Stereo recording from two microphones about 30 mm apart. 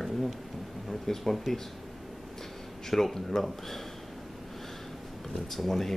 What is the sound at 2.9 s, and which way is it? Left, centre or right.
Speech, centre.